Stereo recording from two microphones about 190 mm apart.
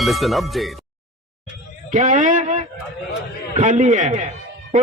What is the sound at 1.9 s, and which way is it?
A man's voice, 45° right (ahead or behind).